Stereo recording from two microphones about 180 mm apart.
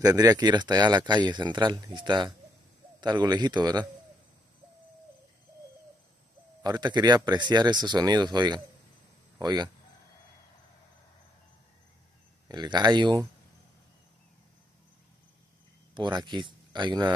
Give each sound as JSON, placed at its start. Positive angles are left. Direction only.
{"t": 0.0, "sound": "speech", "side_deg": -20}
{"t": 6.6, "sound": "speech", "side_deg": -25}
{"t": 12.4, "sound": "speech", "side_deg": -25}
{"t": 15.9, "sound": "speech", "side_deg": -25}